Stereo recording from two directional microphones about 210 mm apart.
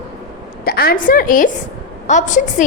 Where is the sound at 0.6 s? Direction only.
45° left (ahead or behind).